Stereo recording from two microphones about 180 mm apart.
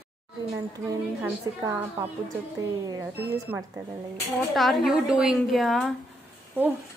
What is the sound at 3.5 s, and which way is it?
Speech, 15° right (ahead or behind).